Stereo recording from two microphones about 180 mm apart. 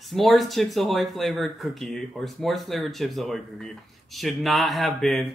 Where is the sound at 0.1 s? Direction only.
Centre (ahead or behind).